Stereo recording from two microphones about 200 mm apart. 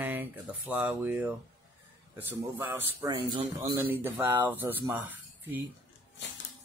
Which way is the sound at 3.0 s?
20° right (ahead or behind).